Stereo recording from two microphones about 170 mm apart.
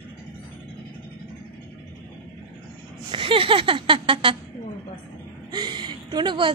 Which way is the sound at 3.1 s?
30° right (ahead or behind).